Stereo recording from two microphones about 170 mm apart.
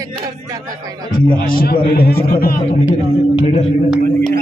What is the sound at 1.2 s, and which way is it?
A man's voice, 55° left (ahead or behind).